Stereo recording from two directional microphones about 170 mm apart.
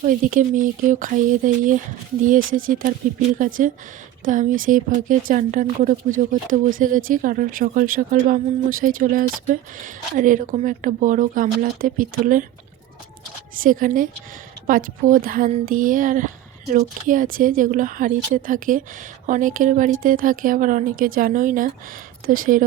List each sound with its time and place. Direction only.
0.0 s speech: 50° right (ahead or behind)
13.6 s speech: 55° right (ahead or behind)